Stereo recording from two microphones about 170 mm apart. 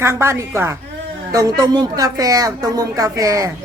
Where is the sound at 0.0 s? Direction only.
15° right (ahead or behind).